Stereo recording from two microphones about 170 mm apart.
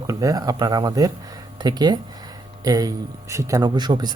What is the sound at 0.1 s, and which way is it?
Speech, 20° right (ahead or behind).